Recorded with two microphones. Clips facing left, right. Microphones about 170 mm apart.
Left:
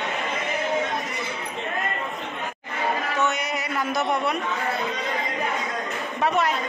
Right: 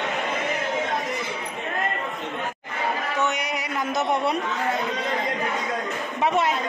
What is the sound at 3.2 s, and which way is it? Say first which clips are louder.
Music: left 1 dB; 15° right (ahead or behind).